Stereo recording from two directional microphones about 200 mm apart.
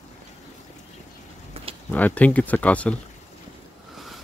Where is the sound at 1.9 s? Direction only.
5° left (ahead or behind).